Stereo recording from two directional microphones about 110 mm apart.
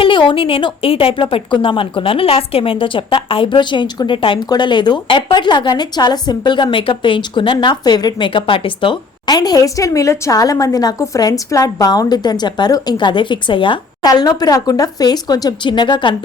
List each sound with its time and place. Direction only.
0.0 s a woman's voice: 50° left (ahead or behind)
14.1 s a woman's voice: 35° left (ahead or behind)